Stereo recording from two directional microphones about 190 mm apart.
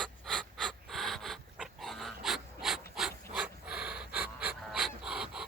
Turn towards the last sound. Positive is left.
turn(degrees=-5)  # may be behind; listen again after turning